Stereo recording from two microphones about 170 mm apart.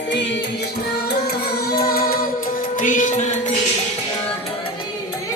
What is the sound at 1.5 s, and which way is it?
Music, 65° left (ahead or behind).